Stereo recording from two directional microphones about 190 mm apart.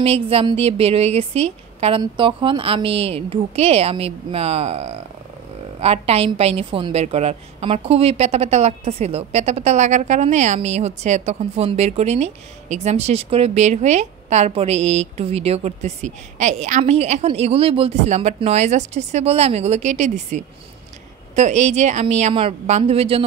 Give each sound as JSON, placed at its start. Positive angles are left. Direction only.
{"t": 0.0, "sound": "a woman's voice", "side_deg": -30}